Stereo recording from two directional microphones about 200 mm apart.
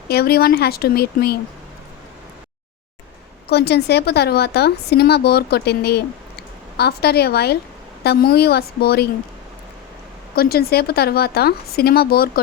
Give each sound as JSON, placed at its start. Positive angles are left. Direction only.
{"t": 0.1, "sound": "speech", "side_deg": 50}
{"t": 3.5, "sound": "speech", "side_deg": 55}
{"t": 10.3, "sound": "speech", "side_deg": 50}